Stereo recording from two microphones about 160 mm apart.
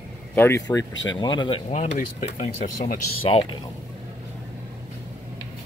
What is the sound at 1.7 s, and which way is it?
Speech, 45° left (ahead or behind).